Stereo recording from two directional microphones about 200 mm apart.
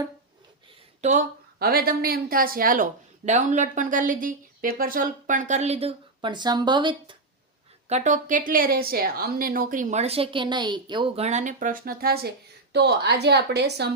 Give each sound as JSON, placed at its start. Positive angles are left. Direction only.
{"t": 1.0, "sound": "a woman's voice", "side_deg": -40}
{"t": 7.9, "sound": "a woman's voice", "side_deg": -35}